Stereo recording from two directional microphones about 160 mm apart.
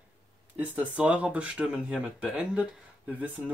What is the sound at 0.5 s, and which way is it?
Speech, 10° right (ahead or behind).